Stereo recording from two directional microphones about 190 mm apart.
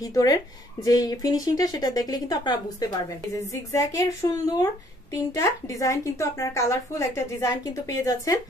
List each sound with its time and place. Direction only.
0.0 s a woman's voice: 20° left (ahead or behind)